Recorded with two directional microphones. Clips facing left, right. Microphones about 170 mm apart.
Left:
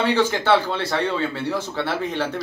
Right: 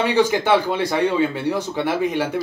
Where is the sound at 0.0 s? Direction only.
15° right (ahead or behind).